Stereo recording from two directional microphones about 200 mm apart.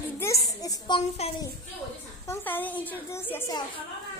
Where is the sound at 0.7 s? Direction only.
25° left (ahead or behind).